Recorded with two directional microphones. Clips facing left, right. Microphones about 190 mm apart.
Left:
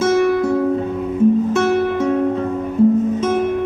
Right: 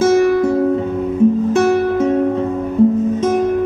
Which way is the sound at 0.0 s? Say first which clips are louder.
Right 3 dB; 35° right (ahead or behind).